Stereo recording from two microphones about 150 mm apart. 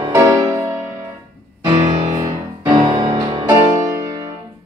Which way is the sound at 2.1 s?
20° right (ahead or behind).